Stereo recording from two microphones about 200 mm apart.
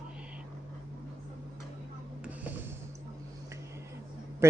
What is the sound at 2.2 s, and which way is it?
Music, 10° right (ahead or behind).